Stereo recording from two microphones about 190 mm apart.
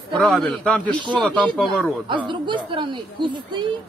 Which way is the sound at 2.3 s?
25° right (ahead or behind).